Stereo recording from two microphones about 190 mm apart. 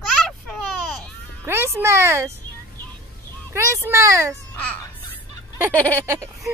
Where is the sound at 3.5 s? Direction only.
15° right (ahead or behind).